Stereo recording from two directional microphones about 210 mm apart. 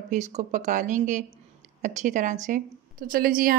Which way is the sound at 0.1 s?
35° right (ahead or behind).